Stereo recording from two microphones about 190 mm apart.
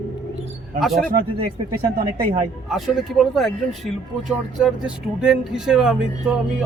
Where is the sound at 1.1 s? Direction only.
50° right (ahead or behind).